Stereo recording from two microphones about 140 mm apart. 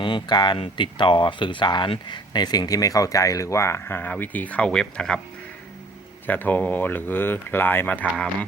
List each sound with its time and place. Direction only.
0.0 s speech: 35° left (ahead or behind); by 5.2 s 5° left (ahead or behind)
6.2 s speech: 15° left (ahead or behind)